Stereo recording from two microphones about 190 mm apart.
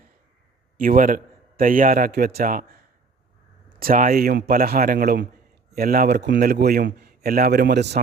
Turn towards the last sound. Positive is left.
turn(degrees=-65)  # may be behind; listen again after turning